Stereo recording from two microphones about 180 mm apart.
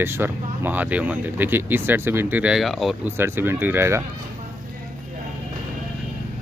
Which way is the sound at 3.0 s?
15° right (ahead or behind).